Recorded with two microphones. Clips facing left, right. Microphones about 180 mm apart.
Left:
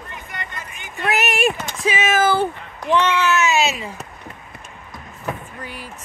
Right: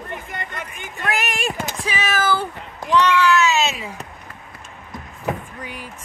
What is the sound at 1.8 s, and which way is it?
Speech, 20° left (ahead or behind).